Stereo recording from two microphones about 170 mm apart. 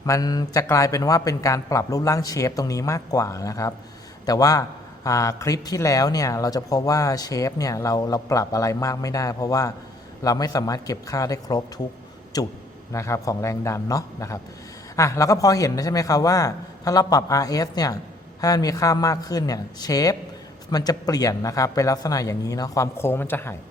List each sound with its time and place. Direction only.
0.0 s a man's voice: 20° left (ahead or behind)
12.9 s a man's voice: 15° left (ahead or behind)